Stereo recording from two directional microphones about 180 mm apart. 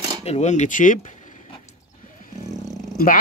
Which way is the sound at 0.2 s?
35° left (ahead or behind).